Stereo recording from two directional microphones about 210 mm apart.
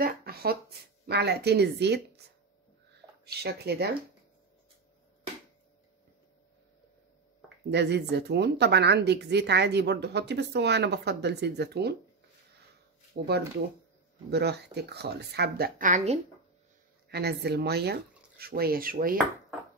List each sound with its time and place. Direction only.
0.0 s a sound: 45° right (ahead or behind)
1.0 s a woman's voice: 50° right (ahead or behind)
3.3 s a woman's voice: 50° right (ahead or behind)
7.7 s a woman's voice: 55° right (ahead or behind)
13.2 s a woman's voice: 45° right (ahead or behind)
17.1 s a woman's voice: 50° right (ahead or behind)